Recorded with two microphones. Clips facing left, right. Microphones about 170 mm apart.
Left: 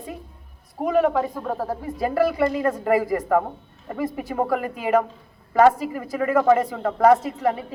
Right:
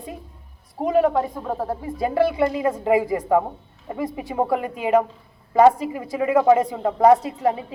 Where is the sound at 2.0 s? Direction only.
20° right (ahead or behind).